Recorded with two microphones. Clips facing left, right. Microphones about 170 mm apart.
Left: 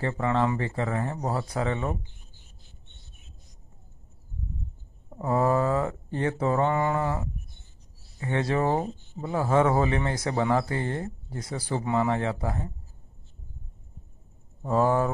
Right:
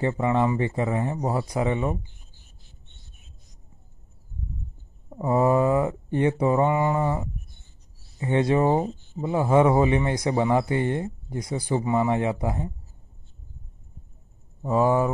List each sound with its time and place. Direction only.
0.0 s speech: 15° right (ahead or behind)
5.1 s speech: 15° right (ahead or behind)
14.6 s speech: 10° right (ahead or behind)